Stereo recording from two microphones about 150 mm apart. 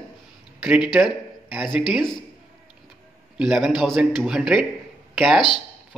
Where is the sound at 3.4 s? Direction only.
5° right (ahead or behind).